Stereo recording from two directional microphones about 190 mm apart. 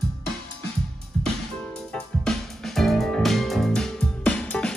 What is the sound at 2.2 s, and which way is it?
Music, centre (ahead or behind).